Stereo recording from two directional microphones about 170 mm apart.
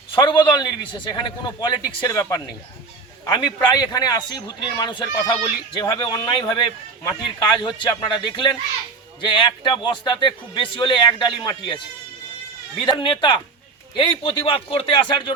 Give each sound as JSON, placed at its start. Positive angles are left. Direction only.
{"t": 0.2, "sound": "speech", "side_deg": 25}
{"t": 12.8, "sound": "a man's voice", "side_deg": 25}